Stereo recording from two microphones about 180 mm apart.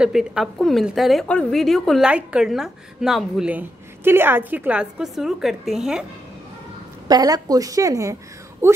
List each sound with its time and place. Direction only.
0.0 s a woman's voice: 5° right (ahead or behind)
7.1 s speech: 20° right (ahead or behind)